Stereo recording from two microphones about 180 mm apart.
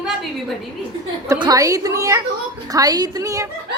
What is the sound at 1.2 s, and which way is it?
A woman's voice, 20° right (ahead or behind).